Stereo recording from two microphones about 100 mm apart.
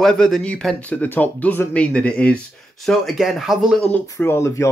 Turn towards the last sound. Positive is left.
turn(degrees=25)  # may be behind; listen again after turning